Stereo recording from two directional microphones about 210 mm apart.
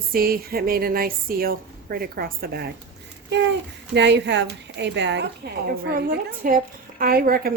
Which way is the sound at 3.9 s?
55° right (ahead or behind).